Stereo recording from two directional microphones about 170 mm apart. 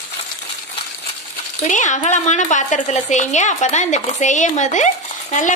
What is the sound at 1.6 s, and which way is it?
A woman's voice, 45° left (ahead or behind).